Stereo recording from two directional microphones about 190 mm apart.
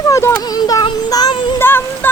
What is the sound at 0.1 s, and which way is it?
Child singing, 15° left (ahead or behind).